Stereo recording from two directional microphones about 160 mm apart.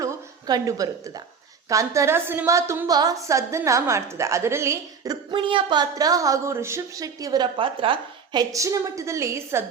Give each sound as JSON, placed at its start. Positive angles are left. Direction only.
{"t": 0.0, "sound": "a woman's voice", "side_deg": -20}
{"t": 5.3, "sound": "speech", "side_deg": -30}